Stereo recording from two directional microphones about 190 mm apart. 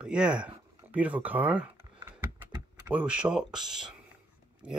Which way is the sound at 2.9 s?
10° right (ahead or behind).